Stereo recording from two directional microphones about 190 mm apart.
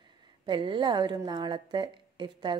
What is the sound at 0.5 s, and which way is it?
A woman's voice, 25° right (ahead or behind).